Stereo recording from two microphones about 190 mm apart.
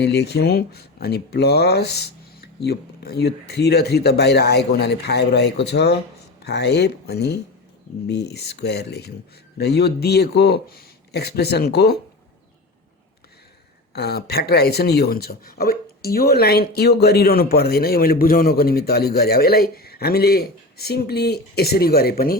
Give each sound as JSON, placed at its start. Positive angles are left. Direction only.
{"t": 0.0, "sound": "speech", "side_deg": 60}
{"t": 13.9, "sound": "speech", "side_deg": 55}